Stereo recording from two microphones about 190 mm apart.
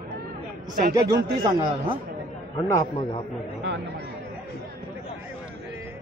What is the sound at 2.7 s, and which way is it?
Speech, 20° left (ahead or behind).